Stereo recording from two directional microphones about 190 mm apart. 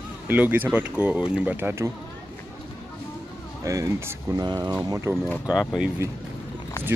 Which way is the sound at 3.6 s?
15° right (ahead or behind).